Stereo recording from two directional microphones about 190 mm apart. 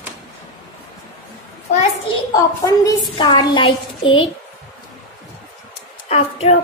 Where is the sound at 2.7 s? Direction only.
20° left (ahead or behind).